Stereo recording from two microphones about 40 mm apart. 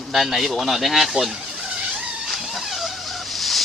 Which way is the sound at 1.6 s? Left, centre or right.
Right.